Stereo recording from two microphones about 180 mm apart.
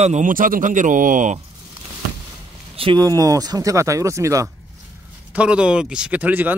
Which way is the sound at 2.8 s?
25° right (ahead or behind).